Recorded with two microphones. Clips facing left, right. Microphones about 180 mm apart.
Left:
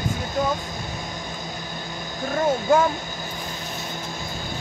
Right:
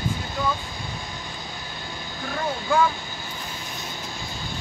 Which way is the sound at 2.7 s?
45° left (ahead or behind).